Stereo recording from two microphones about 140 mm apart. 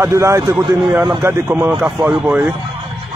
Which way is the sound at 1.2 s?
15° right (ahead or behind).